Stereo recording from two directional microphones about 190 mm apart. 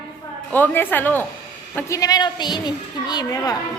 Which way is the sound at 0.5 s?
10° left (ahead or behind).